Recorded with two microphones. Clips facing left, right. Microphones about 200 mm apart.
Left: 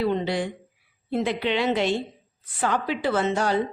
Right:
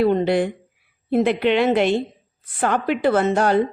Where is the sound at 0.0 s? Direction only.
55° right (ahead or behind).